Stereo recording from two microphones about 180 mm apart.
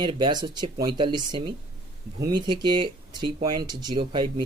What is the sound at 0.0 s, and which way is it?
Speech, 25° right (ahead or behind).